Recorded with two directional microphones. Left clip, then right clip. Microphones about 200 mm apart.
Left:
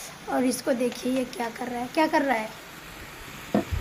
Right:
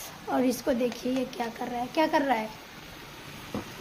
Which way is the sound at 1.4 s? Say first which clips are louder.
Left 1 dB; 15° left (ahead or behind).